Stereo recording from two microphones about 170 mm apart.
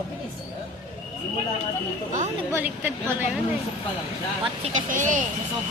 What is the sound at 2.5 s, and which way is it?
Speech, 10° right (ahead or behind).